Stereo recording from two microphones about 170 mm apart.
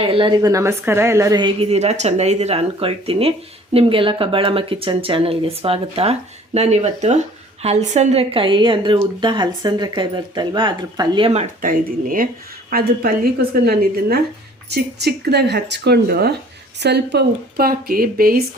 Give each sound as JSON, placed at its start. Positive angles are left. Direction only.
{"t": 0.0, "sound": "speech", "side_deg": -30}
{"t": 11.6, "sound": "speech", "side_deg": -55}
{"t": 16.8, "sound": "speech", "side_deg": -85}